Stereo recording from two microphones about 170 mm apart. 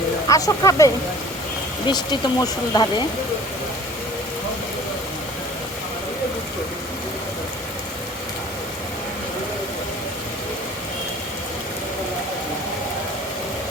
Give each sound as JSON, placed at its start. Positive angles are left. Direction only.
{"t": 0.3, "sound": "speech", "side_deg": 20}
{"t": 1.9, "sound": "speech", "side_deg": 25}